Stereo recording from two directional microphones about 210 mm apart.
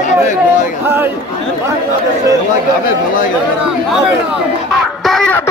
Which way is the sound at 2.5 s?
40° left (ahead or behind).